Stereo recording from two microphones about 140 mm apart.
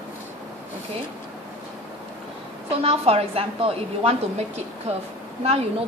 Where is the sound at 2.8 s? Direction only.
45° right (ahead or behind).